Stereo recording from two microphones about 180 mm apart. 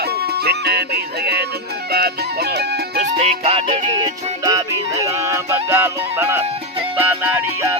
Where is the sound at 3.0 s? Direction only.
35° right (ahead or behind).